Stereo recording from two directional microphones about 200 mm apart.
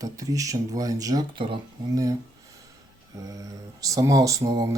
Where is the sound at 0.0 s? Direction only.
15° right (ahead or behind).